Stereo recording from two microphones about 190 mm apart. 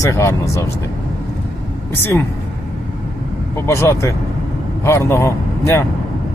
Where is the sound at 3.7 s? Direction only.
15° left (ahead or behind).